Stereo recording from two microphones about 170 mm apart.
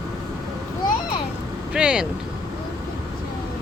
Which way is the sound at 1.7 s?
5° right (ahead or behind).